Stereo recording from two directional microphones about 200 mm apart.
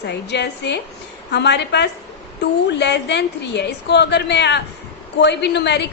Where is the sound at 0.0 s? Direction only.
55° left (ahead or behind).